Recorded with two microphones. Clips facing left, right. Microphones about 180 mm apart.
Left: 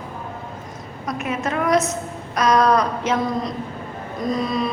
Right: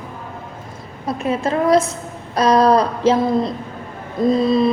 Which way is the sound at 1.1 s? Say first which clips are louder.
Right 5 dB; 30° right (ahead or behind).